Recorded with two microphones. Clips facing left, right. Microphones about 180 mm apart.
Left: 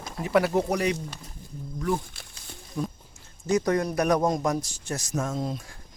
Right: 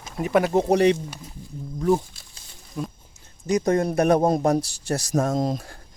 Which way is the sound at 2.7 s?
5° right (ahead or behind).